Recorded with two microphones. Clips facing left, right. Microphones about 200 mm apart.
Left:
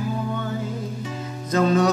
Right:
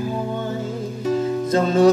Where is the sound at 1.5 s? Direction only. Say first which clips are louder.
Right 3 dB; 30° right (ahead or behind).